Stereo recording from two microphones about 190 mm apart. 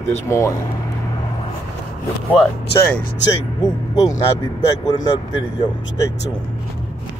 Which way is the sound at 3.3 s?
20° left (ahead or behind).